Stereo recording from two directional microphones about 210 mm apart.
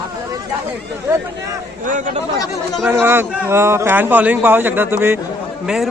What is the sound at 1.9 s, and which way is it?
Speech, 35° right (ahead or behind).